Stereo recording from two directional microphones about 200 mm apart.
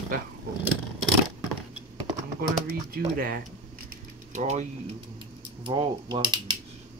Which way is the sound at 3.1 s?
45° right (ahead or behind).